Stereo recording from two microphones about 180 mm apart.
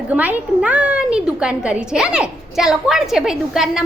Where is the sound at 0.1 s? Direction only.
10° right (ahead or behind).